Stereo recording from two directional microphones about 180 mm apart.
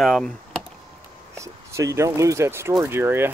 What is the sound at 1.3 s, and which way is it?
Speech, 15° right (ahead or behind).